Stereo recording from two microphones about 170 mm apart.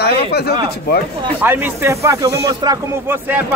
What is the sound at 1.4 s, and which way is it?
Speech, 10° right (ahead or behind).